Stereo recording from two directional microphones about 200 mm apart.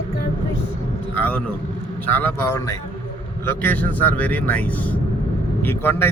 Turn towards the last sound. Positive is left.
turn(degrees=10)  # may be behind; listen again after turning